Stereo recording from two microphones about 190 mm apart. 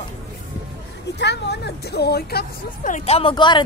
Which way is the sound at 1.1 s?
65° left (ahead or behind).